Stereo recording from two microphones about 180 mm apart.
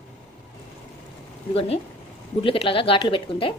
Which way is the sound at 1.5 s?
35° left (ahead or behind).